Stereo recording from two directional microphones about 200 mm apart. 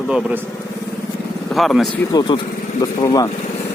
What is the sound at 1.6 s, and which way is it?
Speech, centre (ahead or behind).